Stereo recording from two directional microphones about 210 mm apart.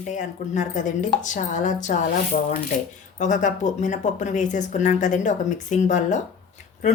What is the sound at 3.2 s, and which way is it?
Speech, 35° left (ahead or behind).